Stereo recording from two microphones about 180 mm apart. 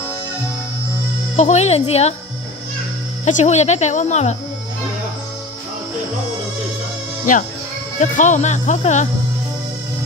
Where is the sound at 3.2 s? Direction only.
40° left (ahead or behind).